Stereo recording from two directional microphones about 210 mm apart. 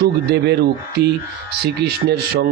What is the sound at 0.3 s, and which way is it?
Speech, 50° right (ahead or behind).